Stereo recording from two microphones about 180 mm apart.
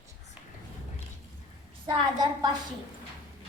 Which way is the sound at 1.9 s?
20° right (ahead or behind).